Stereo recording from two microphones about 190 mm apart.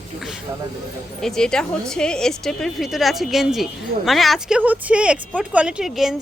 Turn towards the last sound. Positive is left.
turn(degrees=0)  # may be behind; listen again after turning